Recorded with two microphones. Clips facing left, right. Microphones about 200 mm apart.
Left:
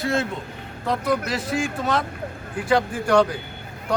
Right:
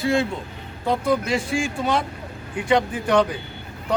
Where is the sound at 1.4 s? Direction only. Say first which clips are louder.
Even; 25° right (ahead or behind).